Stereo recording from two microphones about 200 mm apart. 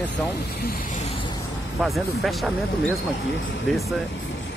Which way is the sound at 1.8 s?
Centre (ahead or behind).